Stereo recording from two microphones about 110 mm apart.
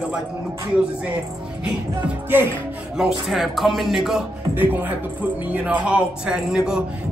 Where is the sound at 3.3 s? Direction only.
Centre (ahead or behind).